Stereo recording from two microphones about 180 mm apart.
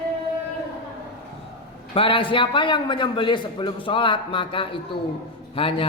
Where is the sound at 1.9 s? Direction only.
30° left (ahead or behind).